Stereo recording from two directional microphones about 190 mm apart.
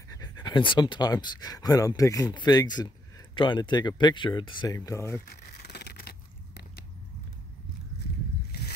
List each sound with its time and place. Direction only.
0.1 s speech: 20° left (ahead or behind)
5.4 s scrape: 60° left (ahead or behind)
8.5 s a sound: 55° left (ahead or behind)